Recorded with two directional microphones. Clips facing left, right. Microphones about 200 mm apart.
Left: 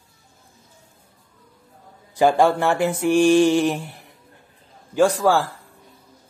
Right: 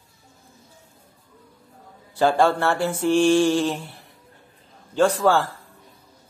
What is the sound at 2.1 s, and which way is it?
Mantra, 15° left (ahead or behind).